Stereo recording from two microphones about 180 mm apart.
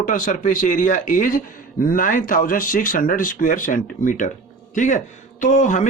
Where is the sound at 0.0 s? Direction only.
45° left (ahead or behind).